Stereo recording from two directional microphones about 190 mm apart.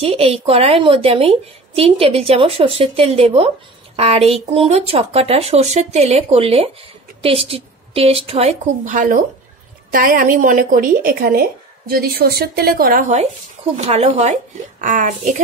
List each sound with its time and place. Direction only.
0.0 s a woman's voice: 30° right (ahead or behind); by 13.0 s 50° right (ahead or behind)
13.7 s a woman's voice: 35° right (ahead or behind)